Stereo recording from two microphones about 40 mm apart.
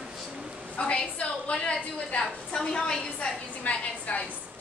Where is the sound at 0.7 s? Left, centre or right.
Left.